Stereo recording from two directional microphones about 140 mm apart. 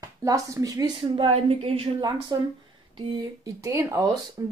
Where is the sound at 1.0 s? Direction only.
40° right (ahead or behind).